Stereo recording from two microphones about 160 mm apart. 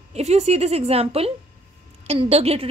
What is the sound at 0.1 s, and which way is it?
A woman's voice, 45° right (ahead or behind).